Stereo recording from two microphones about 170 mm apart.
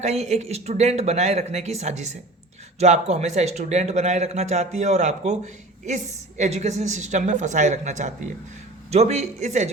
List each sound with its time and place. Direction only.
0.0 s a woman's voice: 40° right (ahead or behind)